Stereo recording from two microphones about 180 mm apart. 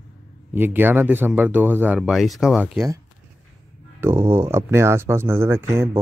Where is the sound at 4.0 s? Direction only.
15° right (ahead or behind).